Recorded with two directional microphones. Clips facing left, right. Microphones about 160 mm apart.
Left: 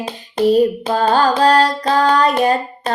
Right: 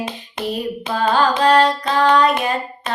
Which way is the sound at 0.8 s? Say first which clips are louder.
Left 3 dB; 40° left (ahead or behind).